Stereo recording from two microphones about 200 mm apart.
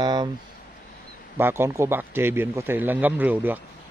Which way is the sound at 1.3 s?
10° right (ahead or behind).